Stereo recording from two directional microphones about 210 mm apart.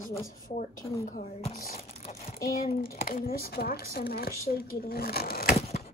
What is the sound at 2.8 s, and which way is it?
Speech, 45° left (ahead or behind).